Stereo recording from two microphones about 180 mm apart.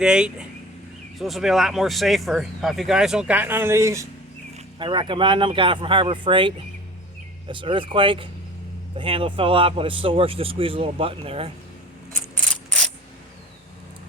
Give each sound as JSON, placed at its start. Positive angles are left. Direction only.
{"t": 0.0, "sound": "speech", "side_deg": -5}
{"t": 4.5, "sound": "speech", "side_deg": -25}